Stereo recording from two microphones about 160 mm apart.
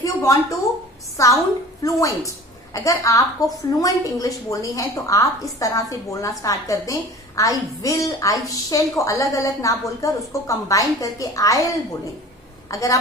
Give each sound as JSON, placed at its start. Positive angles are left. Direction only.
{"t": 0.0, "sound": "a sound", "side_deg": 20}
{"t": 1.2, "sound": "a woman's voice", "side_deg": 20}
{"t": 12.7, "sound": "a woman's voice", "side_deg": 20}